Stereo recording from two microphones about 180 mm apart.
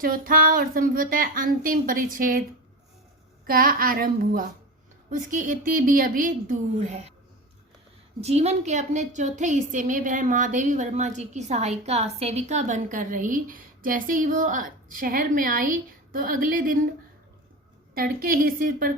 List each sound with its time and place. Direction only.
0.0 s a woman's voice: 50° right (ahead or behind)
3.4 s a woman's voice: 55° right (ahead or behind)
8.2 s a woman's voice: 35° right (ahead or behind)
17.9 s a woman's voice: 55° right (ahead or behind)